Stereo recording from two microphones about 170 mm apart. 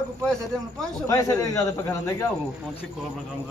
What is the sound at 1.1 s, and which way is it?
A man's voice, 20° left (ahead or behind).